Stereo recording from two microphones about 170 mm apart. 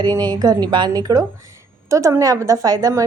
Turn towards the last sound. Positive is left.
turn(degrees=-20)  # may be behind; listen again after turning